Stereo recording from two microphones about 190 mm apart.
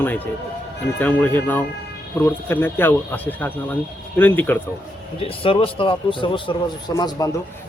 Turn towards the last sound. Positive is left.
turn(degrees=20)  # may be behind; listen again after turning